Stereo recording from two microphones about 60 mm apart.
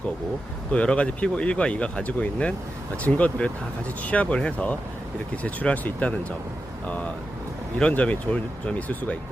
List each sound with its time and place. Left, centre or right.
0.7 s speech: centre